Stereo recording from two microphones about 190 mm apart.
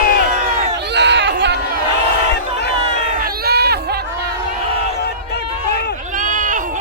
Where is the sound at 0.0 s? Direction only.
55° left (ahead or behind).